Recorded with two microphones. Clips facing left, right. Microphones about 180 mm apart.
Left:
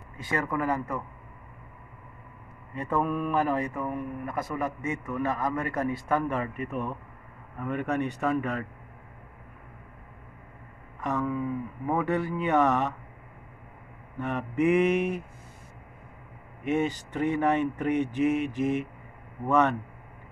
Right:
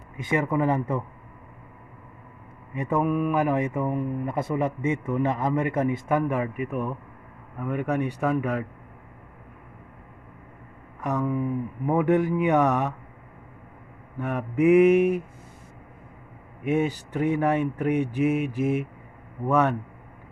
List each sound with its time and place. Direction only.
0.2 s speech: 20° right (ahead or behind)
2.7 s speech: 15° right (ahead or behind)
11.0 s speech: 15° right (ahead or behind)
14.1 s speech: 5° right (ahead or behind)
16.6 s speech: 10° right (ahead or behind)